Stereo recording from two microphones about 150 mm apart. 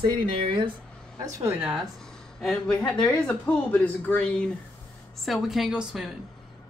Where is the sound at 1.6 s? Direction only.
5° right (ahead or behind).